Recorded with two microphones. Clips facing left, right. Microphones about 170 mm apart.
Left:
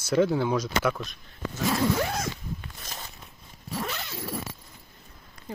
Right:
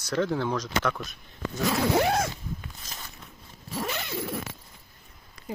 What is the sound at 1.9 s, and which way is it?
Speech, 70° right (ahead or behind).